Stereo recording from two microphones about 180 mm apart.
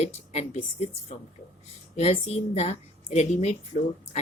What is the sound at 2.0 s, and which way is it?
Speech, 35° left (ahead or behind).